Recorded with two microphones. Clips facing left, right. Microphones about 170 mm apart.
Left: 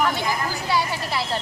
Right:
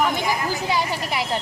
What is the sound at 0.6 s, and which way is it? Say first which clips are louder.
Speech: left 2 dB; 15° right (ahead or behind).